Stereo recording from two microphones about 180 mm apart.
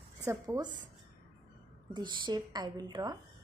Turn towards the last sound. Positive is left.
turn(degrees=-20)  # may be behind; listen again after turning